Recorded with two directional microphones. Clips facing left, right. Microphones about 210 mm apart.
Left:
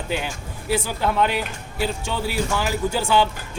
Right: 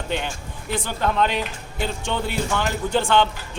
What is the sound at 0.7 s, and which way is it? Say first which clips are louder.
Speech: left 2 dB; 10° left (ahead or behind).